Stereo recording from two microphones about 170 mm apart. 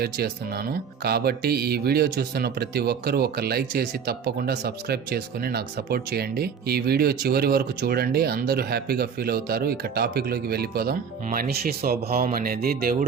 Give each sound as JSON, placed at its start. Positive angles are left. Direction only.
{"t": 0.0, "sound": "speech", "side_deg": -65}